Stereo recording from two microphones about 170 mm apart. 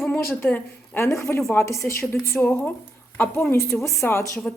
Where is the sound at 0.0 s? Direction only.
5° left (ahead or behind).